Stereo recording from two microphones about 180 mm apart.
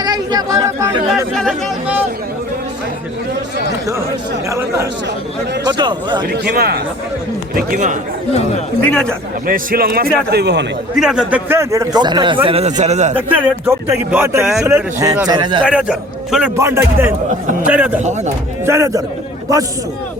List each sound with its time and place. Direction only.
0.0 s chatter: 20° right (ahead or behind)
1.1 s a man's voice: centre (ahead or behind)
4.4 s speech: 15° right (ahead or behind)
6.3 s a man's voice: 60° right (ahead or behind)
7.5 s a man's voice: 45° right (ahead or behind)
8.3 s speech: 35° left (ahead or behind)
8.8 s speech: 5° left (ahead or behind)
9.5 s a man's voice: 55° right (ahead or behind); by 10.7 s 70° right (ahead or behind)
10.9 s speech: 5° right (ahead or behind); by 13.1 s 40° right (ahead or behind)
13.1 s speech: 10° right (ahead or behind); by 15.6 s 25° right (ahead or behind)
15.6 s a man's voice: 5° right (ahead or behind)
16.6 s speech: 15° right (ahead or behind)